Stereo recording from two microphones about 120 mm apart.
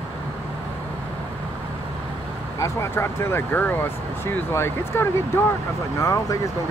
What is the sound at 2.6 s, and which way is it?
Speech, 20° left (ahead or behind).